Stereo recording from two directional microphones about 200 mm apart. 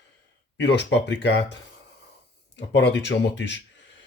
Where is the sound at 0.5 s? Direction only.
60° left (ahead or behind).